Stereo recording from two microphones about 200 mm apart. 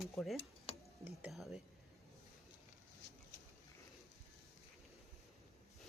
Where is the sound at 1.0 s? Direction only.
10° right (ahead or behind).